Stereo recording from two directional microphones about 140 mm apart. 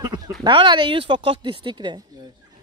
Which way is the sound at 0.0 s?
30° right (ahead or behind).